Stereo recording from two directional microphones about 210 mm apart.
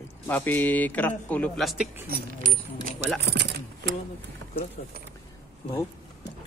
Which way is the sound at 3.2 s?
55° right (ahead or behind).